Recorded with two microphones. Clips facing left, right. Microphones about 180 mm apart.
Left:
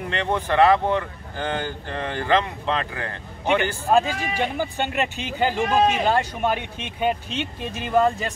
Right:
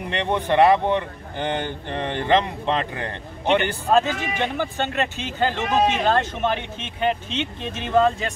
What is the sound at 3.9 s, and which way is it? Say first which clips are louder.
Speech: right 1 dB; 10° left (ahead or behind).